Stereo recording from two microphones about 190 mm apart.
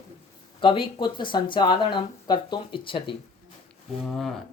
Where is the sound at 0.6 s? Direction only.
25° left (ahead or behind).